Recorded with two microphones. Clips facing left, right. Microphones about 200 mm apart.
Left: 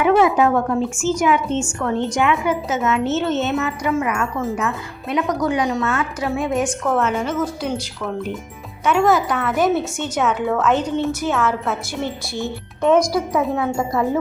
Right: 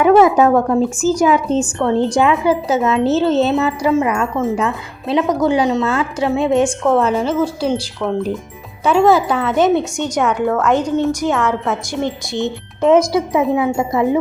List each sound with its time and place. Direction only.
0.0 s a woman's voice: 40° right (ahead or behind)
9.7 s speech: 15° right (ahead or behind)
11.3 s a woman's voice: centre (ahead or behind)
11.9 s speech: 15° right (ahead or behind)